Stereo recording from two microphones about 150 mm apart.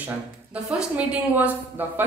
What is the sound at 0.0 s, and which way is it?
A woman's voice, 5° right (ahead or behind).